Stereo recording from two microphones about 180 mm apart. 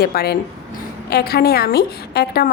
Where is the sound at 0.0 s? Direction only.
60° left (ahead or behind).